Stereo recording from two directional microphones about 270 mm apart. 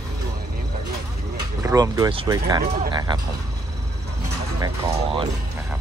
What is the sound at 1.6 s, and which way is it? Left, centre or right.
Speech, centre.